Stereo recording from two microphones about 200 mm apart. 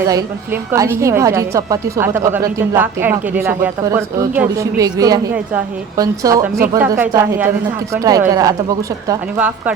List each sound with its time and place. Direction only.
0.1 s a woman's voice: 15° right (ahead or behind)